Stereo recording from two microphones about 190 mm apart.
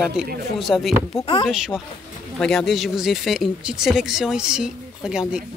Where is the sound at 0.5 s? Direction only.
Centre (ahead or behind).